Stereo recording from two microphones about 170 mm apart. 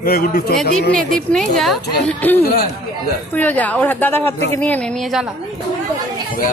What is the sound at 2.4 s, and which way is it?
Speech, 65° left (ahead or behind).